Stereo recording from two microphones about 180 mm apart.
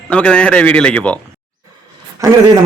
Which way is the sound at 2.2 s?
15° right (ahead or behind).